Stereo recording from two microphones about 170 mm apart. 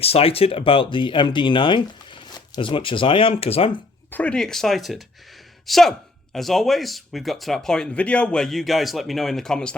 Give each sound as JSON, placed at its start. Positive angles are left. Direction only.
{"t": 0.0, "sound": "speech", "side_deg": 35}
{"t": 4.1, "sound": "speech", "side_deg": 5}